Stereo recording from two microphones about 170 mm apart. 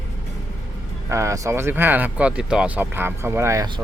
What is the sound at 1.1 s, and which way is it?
Speech, 15° right (ahead or behind).